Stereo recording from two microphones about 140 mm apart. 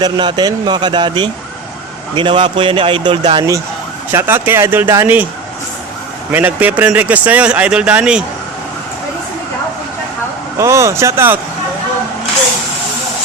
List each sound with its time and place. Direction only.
0.0 s speech: 35° right (ahead or behind)
4.1 s speech: 15° right (ahead or behind)
6.3 s speech: 10° right (ahead or behind)
10.6 s speech: 20° right (ahead or behind)